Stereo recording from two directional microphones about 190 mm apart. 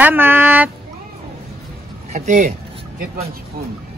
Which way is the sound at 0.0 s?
10° right (ahead or behind).